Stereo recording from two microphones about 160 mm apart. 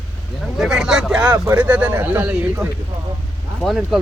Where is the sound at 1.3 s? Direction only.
20° right (ahead or behind).